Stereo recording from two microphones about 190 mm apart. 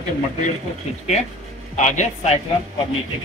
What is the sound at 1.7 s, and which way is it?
Speech, 40° left (ahead or behind).